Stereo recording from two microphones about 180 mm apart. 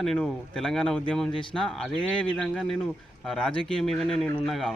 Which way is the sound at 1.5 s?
Centre (ahead or behind).